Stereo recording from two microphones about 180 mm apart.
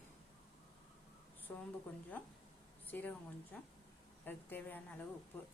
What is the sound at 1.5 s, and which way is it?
A woman's voice, 10° left (ahead or behind).